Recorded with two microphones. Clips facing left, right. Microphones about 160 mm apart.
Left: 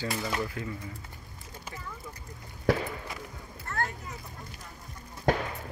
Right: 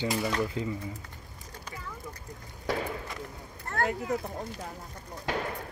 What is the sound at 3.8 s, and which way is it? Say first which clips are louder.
Speech: right 9 dB; 80° right.